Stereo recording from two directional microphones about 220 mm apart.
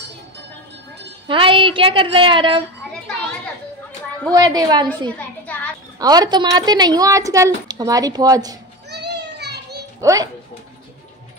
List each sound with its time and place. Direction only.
1.2 s a woman's voice: 25° right (ahead or behind)
4.3 s a woman's voice: 15° right (ahead or behind)
8.9 s children playing: 50° right (ahead or behind)
9.9 s a child's voice: 15° right (ahead or behind)